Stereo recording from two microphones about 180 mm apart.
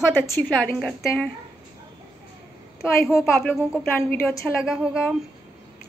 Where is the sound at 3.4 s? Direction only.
5° left (ahead or behind).